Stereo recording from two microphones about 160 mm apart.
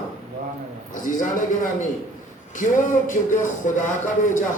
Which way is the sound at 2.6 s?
55° left (ahead or behind).